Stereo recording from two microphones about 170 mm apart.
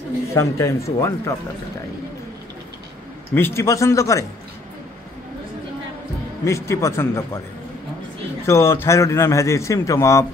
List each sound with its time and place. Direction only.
0.3 s a man's voice: 20° left (ahead or behind)
3.3 s a man's voice: 15° left (ahead or behind)
6.4 s a man's voice: 20° left (ahead or behind)
8.5 s a man's voice: 15° left (ahead or behind)